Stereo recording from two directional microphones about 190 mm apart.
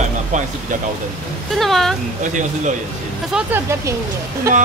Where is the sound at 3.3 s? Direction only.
10° right (ahead or behind).